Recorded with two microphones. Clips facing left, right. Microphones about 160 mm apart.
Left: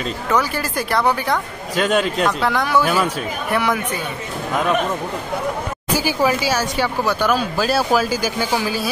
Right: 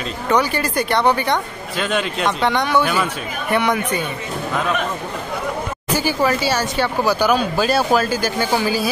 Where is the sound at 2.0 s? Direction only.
Centre (ahead or behind).